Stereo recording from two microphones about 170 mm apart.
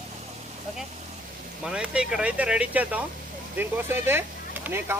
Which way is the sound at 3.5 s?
10° right (ahead or behind).